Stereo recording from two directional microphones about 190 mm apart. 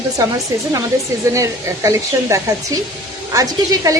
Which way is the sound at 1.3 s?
15° right (ahead or behind).